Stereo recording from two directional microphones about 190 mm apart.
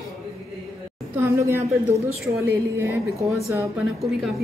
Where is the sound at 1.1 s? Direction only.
15° right (ahead or behind).